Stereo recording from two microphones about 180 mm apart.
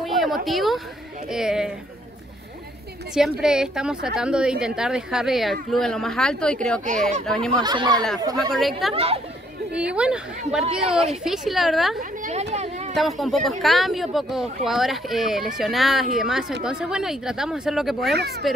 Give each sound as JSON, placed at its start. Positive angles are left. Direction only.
{"t": 0.0, "sound": "a sound", "side_deg": 0}
{"t": 0.5, "sound": "speech", "side_deg": 0}
{"t": 3.2, "sound": "speech", "side_deg": -5}
{"t": 7.6, "sound": "speech", "side_deg": -25}
{"t": 8.4, "sound": "speech", "side_deg": 0}
{"t": 8.9, "sound": "speech", "side_deg": -30}
{"t": 9.7, "sound": "speech", "side_deg": -5}
{"t": 12.0, "sound": "speech", "side_deg": -40}
{"t": 12.9, "sound": "speech", "side_deg": 0}